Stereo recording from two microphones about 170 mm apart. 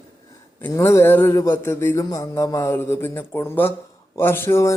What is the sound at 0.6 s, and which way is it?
Speech, 15° left (ahead or behind).